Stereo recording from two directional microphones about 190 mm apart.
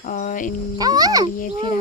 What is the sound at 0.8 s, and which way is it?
Speech, 20° right (ahead or behind).